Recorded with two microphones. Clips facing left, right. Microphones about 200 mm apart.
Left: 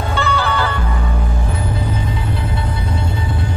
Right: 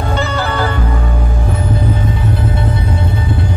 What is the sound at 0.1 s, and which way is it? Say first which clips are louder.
Music: even; 40° right (ahead or behind).